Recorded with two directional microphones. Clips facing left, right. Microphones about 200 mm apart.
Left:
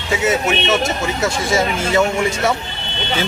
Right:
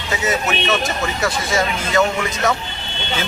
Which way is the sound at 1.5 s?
10° left (ahead or behind).